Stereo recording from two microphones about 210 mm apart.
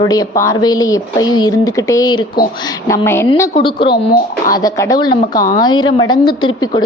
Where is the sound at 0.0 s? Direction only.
15° left (ahead or behind).